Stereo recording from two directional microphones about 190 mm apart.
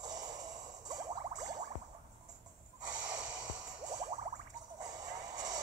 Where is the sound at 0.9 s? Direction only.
20° right (ahead or behind).